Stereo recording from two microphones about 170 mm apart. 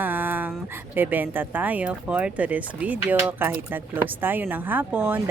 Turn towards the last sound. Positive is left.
turn(degrees=-10)  # may be behind; listen again after turning